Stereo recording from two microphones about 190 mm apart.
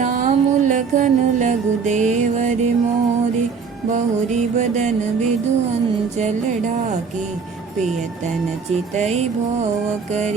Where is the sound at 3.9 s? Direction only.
40° right (ahead or behind).